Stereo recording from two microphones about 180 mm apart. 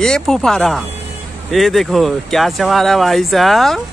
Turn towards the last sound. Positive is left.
turn(degrees=0)  # may be behind; listen again after turning